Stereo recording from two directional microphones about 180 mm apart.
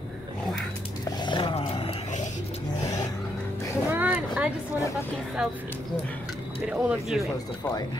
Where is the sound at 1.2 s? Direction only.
25° left (ahead or behind).